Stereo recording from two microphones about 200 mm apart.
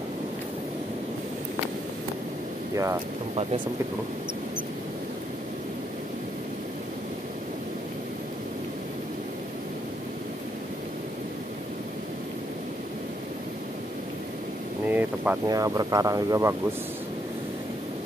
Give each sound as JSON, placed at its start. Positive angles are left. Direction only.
{"t": 2.7, "sound": "speech", "side_deg": -15}
{"t": 14.9, "sound": "speech", "side_deg": -10}